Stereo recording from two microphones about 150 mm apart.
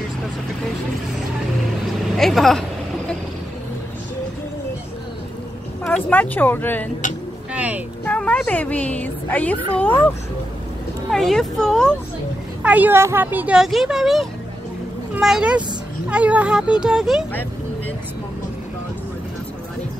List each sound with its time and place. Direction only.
2.1 s speech: centre (ahead or behind)
5.9 s a woman's voice: 10° left (ahead or behind)
7.5 s vehicle: 10° right (ahead or behind)
8.0 s a woman's voice: 10° left (ahead or behind)
11.1 s speech: centre (ahead or behind)
12.6 s speech: 10° right (ahead or behind)